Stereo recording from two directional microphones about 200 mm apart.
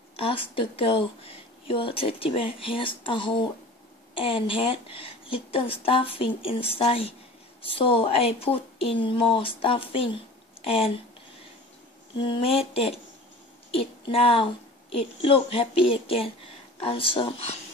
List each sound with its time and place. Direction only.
0.1 s speech: 25° left (ahead or behind)
12.2 s a woman's voice: 25° left (ahead or behind)